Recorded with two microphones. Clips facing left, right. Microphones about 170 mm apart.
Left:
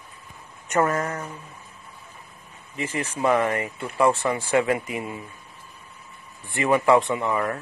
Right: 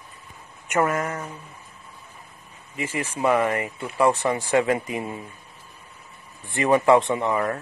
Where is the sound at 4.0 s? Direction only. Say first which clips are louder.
Even; 20° right (ahead or behind).